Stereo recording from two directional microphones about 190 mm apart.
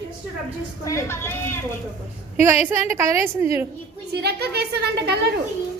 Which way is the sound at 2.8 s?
15° right (ahead or behind).